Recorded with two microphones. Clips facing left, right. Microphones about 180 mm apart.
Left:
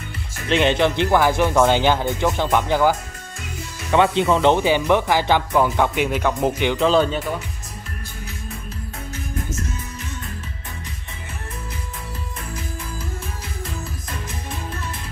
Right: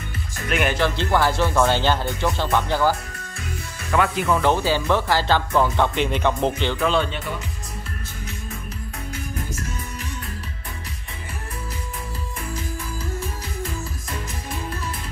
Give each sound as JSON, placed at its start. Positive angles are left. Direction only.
{"t": 0.5, "sound": "speech", "side_deg": 25}
{"t": 3.9, "sound": "speech", "side_deg": 25}
{"t": 6.9, "sound": "speech", "side_deg": 40}